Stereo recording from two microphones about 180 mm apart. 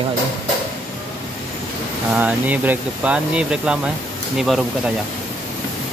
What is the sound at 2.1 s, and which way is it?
Speech, 10° right (ahead or behind).